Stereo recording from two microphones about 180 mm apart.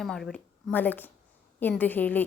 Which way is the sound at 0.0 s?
Centre (ahead or behind).